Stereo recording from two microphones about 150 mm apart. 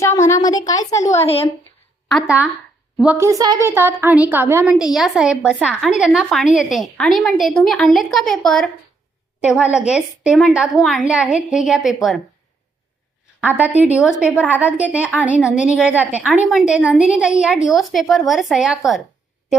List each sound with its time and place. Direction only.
0.2 s a woman's voice: 20° left (ahead or behind)
2.0 s speech: centre (ahead or behind)
3.0 s a woman's voice: 15° right (ahead or behind)
4.9 s a woman's voice: 5° right (ahead or behind)
9.4 s a woman's voice: 5° right (ahead or behind)
13.4 s a woman's voice: 10° right (ahead or behind)